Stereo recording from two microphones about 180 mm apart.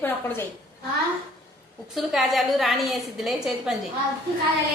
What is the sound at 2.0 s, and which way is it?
A woman's voice, centre (ahead or behind).